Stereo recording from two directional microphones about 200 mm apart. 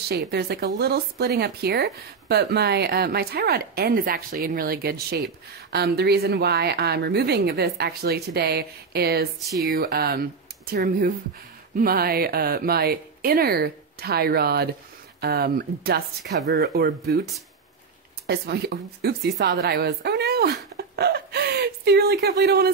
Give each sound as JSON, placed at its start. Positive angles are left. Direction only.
{"t": 0.1, "sound": "speech", "side_deg": -50}
{"t": 18.2, "sound": "a woman's voice", "side_deg": -55}